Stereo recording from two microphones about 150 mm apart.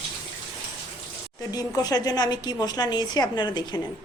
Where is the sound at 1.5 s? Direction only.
25° left (ahead or behind).